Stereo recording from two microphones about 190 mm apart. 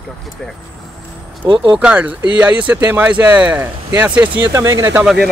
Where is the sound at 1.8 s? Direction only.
5° right (ahead or behind).